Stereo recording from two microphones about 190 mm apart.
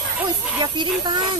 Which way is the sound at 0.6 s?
25° right (ahead or behind).